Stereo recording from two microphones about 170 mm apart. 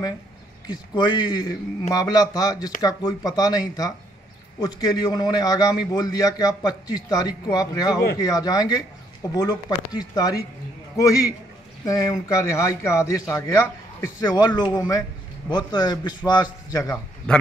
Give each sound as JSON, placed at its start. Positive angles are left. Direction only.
{"t": 0.7, "sound": "a man's voice", "side_deg": 25}
{"t": 17.3, "sound": "a man's voice", "side_deg": 5}